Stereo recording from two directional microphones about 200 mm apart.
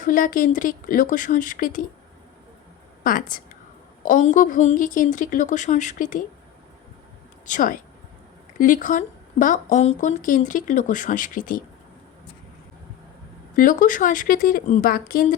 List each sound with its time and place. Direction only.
0.0 s speech: 45° left (ahead or behind)
3.0 s a woman's voice: 45° left (ahead or behind)
7.4 s speech: 40° left (ahead or behind)
13.6 s speech: 40° left (ahead or behind)